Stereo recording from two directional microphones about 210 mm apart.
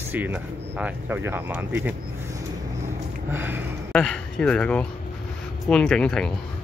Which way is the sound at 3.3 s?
10° right (ahead or behind).